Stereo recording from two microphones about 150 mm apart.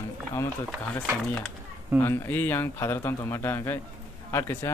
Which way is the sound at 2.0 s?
15° left (ahead or behind).